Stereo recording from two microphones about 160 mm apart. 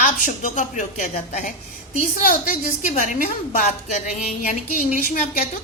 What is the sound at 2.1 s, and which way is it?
A woman's voice, 60° left (ahead or behind).